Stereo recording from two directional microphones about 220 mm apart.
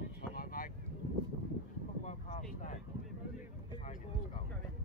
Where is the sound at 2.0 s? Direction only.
35° left (ahead or behind).